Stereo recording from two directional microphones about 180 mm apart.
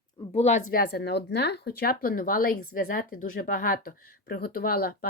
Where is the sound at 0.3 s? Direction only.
40° left (ahead or behind).